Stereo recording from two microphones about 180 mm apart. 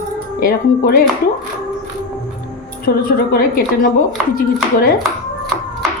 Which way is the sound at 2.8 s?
55° left (ahead or behind).